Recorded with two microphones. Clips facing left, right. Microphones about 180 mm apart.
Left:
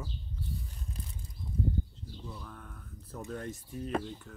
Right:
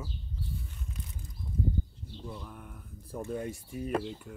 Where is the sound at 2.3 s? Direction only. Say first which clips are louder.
Right 2 dB; 15° right (ahead or behind).